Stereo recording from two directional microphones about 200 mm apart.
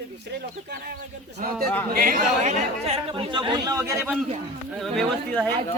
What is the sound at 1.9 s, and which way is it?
Speech, 45° right (ahead or behind).